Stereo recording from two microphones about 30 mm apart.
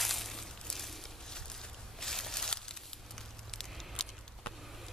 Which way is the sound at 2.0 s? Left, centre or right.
Centre.